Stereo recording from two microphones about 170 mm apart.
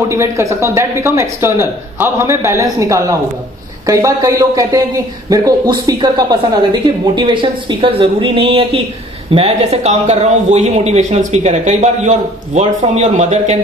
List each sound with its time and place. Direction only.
0.1 s speech: 15° right (ahead or behind); by 13.6 s 40° right (ahead or behind)